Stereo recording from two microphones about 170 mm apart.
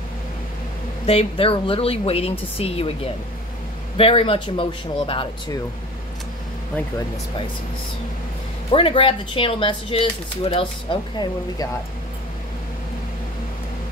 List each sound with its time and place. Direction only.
1.0 s a woman's voice: 35° left (ahead or behind)
8.7 s a woman's voice: 30° left (ahead or behind)